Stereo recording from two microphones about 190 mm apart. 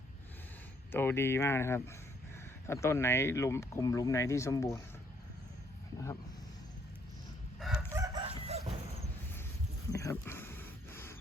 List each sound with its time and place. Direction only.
0.9 s speech: 10° left (ahead or behind)
7.6 s crowing: 5° right (ahead or behind)
7.9 s chicken: 15° right (ahead or behind)
8.2 s chicken: 35° right (ahead or behind)
9.9 s a sound: 15° left (ahead or behind)